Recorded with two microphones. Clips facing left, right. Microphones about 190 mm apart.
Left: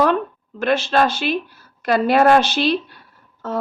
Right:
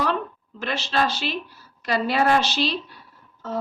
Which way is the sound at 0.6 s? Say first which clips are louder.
Left 7 dB; 55° left (ahead or behind).